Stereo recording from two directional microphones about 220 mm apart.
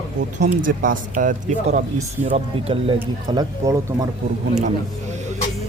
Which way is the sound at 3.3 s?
20° right (ahead or behind).